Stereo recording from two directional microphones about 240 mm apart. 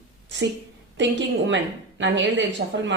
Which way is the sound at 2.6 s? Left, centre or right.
Right.